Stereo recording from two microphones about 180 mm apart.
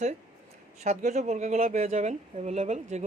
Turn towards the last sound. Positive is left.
turn(degrees=-40)  # may be behind; listen again after turning